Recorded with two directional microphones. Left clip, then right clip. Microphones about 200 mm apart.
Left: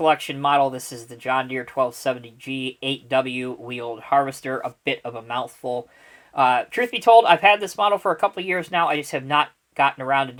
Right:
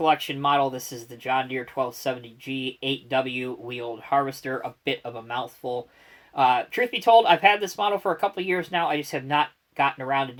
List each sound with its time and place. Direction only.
0.0 s speech: 35° left (ahead or behind)